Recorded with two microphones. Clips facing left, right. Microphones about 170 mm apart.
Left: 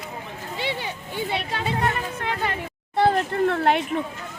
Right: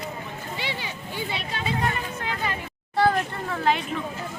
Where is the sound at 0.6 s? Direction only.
55° left (ahead or behind).